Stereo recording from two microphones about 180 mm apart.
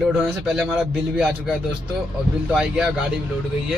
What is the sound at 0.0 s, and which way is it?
Speech, centre (ahead or behind).